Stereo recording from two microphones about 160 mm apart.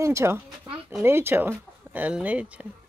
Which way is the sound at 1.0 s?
15° right (ahead or behind).